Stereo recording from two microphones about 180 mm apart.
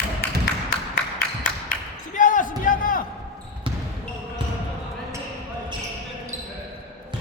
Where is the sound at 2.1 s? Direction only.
45° left (ahead or behind).